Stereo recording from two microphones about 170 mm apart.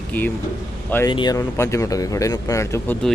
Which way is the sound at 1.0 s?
25° left (ahead or behind).